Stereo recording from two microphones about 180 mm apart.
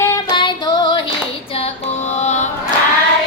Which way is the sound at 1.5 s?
35° left (ahead or behind).